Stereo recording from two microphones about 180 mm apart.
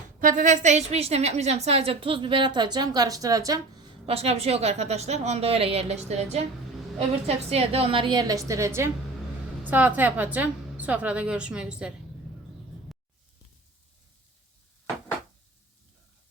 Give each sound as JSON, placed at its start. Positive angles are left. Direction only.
{"t": 0.2, "sound": "a woman's voice", "side_deg": -50}
{"t": 4.0, "sound": "a woman's voice", "side_deg": -35}
{"t": 12.9, "sound": "a sound", "side_deg": 0}